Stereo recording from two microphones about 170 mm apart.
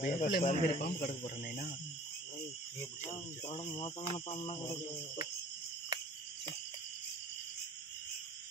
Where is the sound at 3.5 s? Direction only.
35° left (ahead or behind).